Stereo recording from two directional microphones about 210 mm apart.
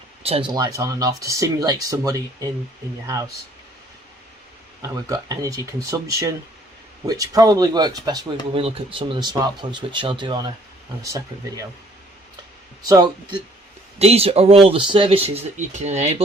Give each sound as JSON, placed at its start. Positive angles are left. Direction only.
{"t": 0.2, "sound": "speech", "side_deg": -25}
{"t": 4.8, "sound": "speech", "side_deg": -15}
{"t": 12.9, "sound": "speech", "side_deg": -20}
{"t": 14.0, "sound": "speech", "side_deg": -30}